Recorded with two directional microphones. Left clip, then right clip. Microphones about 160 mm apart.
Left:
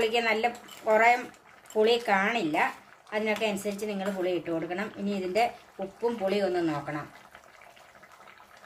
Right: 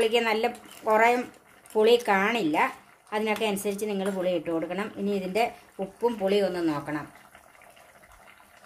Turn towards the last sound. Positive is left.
turn(degrees=-55)  # may be behind; listen again after turning